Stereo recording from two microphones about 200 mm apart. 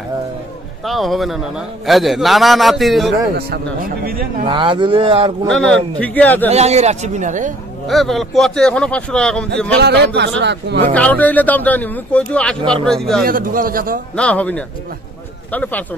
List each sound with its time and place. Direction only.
0.8 s speech: centre (ahead or behind)
3.3 s a man's voice: 50° right (ahead or behind)
4.5 s speech: 25° right (ahead or behind)
5.5 s speech: 5° left (ahead or behind)
6.5 s a man's voice: 35° right (ahead or behind)
7.9 s speech: centre (ahead or behind)
9.8 s a man's voice: 55° right (ahead or behind)
10.9 s speech: 5° left (ahead or behind)
13.2 s a man's voice: 45° right (ahead or behind)
14.1 s speech: 5° left (ahead or behind)